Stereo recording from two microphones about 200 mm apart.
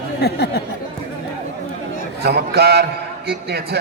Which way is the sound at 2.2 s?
55° right (ahead or behind).